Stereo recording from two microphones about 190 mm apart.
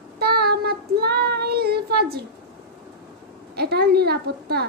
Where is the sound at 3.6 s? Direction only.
55° right (ahead or behind).